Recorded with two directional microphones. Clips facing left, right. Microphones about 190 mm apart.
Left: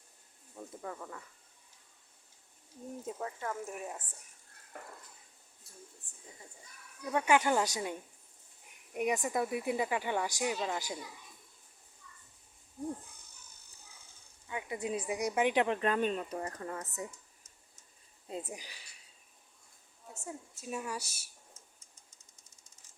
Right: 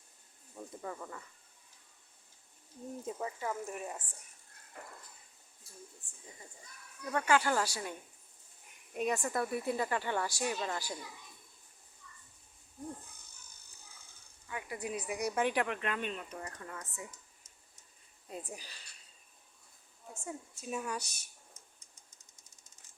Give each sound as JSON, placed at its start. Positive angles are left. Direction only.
{"t": 0.5, "sound": "speech", "side_deg": 0}
{"t": 3.1, "sound": "speech", "side_deg": -5}
{"t": 5.7, "sound": "speech", "side_deg": 0}
{"t": 7.0, "sound": "speech", "side_deg": 15}
{"t": 14.4, "sound": "speech", "side_deg": 20}
{"t": 15.6, "sound": "speech", "side_deg": 35}
{"t": 18.3, "sound": "speech", "side_deg": 25}
{"t": 20.1, "sound": "speech", "side_deg": 5}